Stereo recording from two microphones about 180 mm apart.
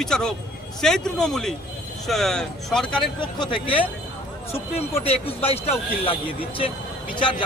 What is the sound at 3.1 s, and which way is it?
A man's voice, 25° left (ahead or behind).